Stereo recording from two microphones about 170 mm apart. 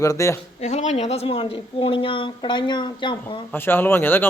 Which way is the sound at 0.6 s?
40° left (ahead or behind).